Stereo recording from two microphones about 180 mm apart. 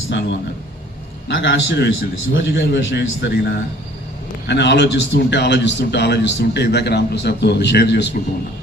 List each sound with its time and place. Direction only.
0.1 s a man's voice: 75° left (ahead or behind)